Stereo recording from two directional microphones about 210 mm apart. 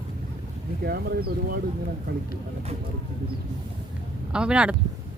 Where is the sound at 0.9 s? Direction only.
45° right (ahead or behind).